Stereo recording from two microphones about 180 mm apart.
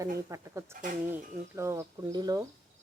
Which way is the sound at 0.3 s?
15° right (ahead or behind).